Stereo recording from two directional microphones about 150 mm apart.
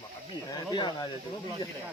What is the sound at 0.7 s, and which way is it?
Speech, 25° left (ahead or behind).